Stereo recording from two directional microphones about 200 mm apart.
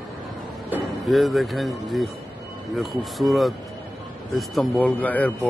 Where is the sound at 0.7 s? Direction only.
Centre (ahead or behind).